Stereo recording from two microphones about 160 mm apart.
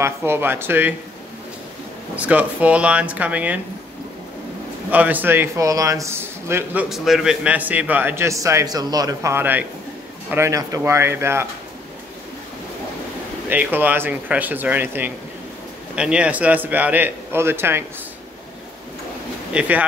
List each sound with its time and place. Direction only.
0.0 s a man's voice: 15° right (ahead or behind)
2.1 s a man's voice: 10° right (ahead or behind)
4.9 s a man's voice: 10° right (ahead or behind)
13.5 s a man's voice: 10° right (ahead or behind)
19.5 s a man's voice: 5° right (ahead or behind)